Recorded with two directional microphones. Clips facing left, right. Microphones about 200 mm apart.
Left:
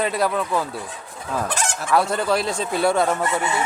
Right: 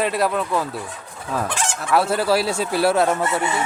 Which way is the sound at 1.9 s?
5° right (ahead or behind).